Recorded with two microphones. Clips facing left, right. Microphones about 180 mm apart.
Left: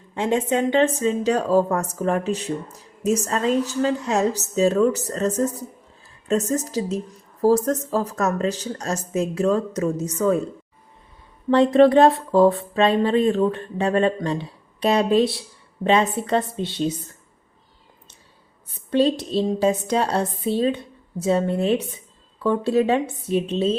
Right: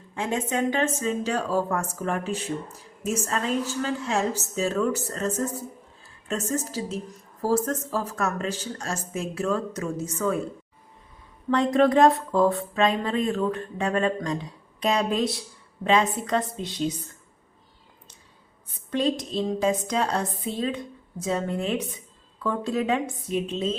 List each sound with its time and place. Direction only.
0.1 s a woman's voice: 35° left (ahead or behind)
11.5 s speech: 30° left (ahead or behind)
18.9 s speech: 30° left (ahead or behind)